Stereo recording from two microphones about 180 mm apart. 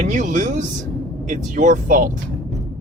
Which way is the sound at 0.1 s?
45° right (ahead or behind).